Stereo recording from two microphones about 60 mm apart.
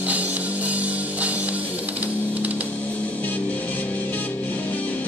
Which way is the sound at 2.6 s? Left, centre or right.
Left.